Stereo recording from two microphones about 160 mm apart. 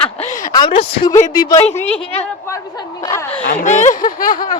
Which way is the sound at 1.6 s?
40° left (ahead or behind).